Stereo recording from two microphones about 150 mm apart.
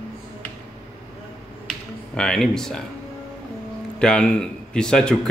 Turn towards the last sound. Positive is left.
turn(degrees=5)  # may be behind; listen again after turning